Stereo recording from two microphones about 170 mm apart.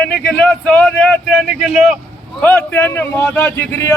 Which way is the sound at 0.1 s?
10° left (ahead or behind).